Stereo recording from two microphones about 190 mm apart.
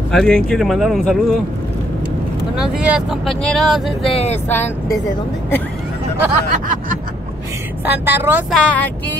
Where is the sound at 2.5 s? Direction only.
5° right (ahead or behind).